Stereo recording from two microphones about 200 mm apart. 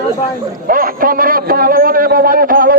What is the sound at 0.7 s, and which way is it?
A man's voice, 45° right (ahead or behind).